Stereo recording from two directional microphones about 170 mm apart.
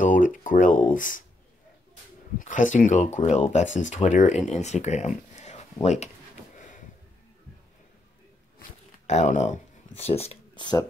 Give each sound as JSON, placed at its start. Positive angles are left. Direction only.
{"t": 0.0, "sound": "speech", "side_deg": 50}
{"t": 2.3, "sound": "speech", "side_deg": 50}
{"t": 6.5, "sound": "a sound", "side_deg": 50}
{"t": 9.0, "sound": "speech", "side_deg": 45}